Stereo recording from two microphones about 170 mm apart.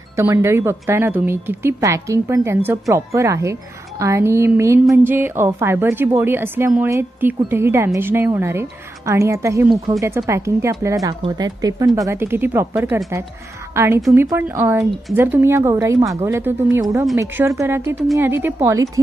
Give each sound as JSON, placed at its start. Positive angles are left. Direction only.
{"t": 0.1, "sound": "speech", "side_deg": -15}